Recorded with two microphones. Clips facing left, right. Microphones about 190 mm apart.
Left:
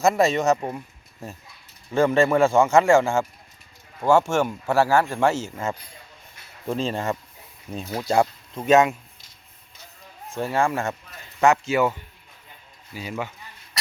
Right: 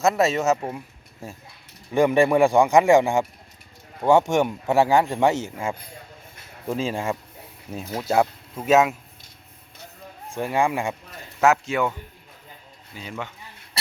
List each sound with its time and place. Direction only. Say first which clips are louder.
0.0 s speech: left 1 dB; 5° right (ahead or behind)
1.9 s speech: right 1 dB; 15° right (ahead or behind)
10.3 s speech: even; 15° right (ahead or behind)
11.3 s speech: left 1 dB; 5° right (ahead or behind)